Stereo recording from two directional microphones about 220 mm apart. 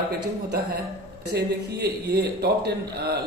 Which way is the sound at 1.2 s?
50° right (ahead or behind).